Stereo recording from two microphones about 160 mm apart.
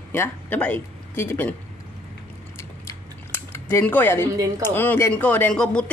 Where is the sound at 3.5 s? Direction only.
15° left (ahead or behind).